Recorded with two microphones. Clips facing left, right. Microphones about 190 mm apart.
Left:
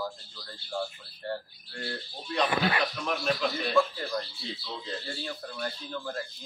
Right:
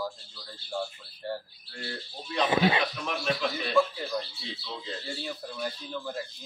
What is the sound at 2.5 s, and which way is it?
Speech, 20° right (ahead or behind).